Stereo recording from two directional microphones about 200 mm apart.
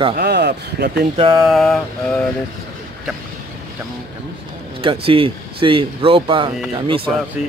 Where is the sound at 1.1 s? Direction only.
25° right (ahead or behind).